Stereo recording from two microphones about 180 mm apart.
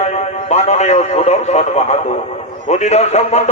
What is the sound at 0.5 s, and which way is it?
Radio, 35° left (ahead or behind).